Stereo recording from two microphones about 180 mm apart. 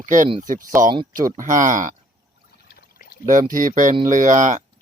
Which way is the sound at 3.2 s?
45° right (ahead or behind).